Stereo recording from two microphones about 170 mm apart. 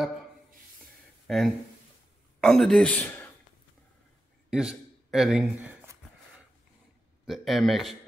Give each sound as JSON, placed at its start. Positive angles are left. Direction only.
{"t": 1.2, "sound": "a sound", "side_deg": 0}
{"t": 2.4, "sound": "speech", "side_deg": 5}
{"t": 4.5, "sound": "a man's voice", "side_deg": -5}
{"t": 7.2, "sound": "speech", "side_deg": 0}